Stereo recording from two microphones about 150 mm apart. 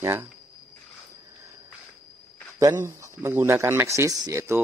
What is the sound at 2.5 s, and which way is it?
Speech, 20° right (ahead or behind).